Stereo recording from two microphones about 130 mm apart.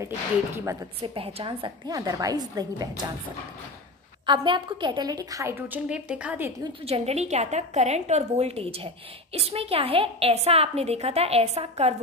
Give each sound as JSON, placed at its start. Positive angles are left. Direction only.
{"t": 1.0, "sound": "a woman's voice", "side_deg": -45}
{"t": 1.9, "sound": "a woman's voice", "side_deg": -25}
{"t": 4.3, "sound": "a woman's voice", "side_deg": -40}
{"t": 6.9, "sound": "a woman's voice", "side_deg": -55}